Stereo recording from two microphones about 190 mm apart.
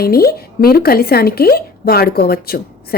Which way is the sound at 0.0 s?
55° left (ahead or behind).